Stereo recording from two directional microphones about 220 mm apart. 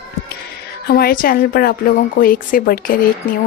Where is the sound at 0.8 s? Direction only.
45° left (ahead or behind).